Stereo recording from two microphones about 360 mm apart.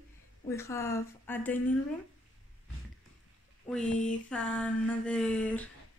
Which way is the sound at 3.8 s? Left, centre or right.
Left.